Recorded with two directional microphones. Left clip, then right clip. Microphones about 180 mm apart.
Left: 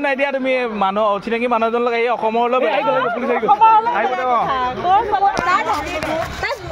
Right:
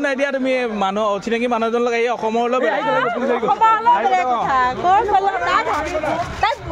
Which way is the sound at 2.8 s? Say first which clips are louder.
Left 1 dB; 40° right (ahead or behind).